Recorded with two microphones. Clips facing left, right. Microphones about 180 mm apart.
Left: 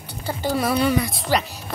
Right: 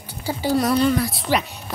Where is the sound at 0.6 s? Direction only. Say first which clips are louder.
Right 1 dB; 10° left (ahead or behind).